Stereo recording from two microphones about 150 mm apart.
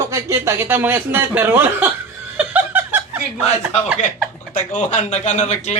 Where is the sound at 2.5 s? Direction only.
10° right (ahead or behind).